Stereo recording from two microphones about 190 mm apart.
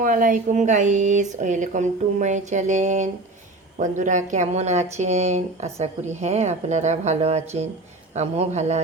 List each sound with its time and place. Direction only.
0.0 s speech: 45° right (ahead or behind)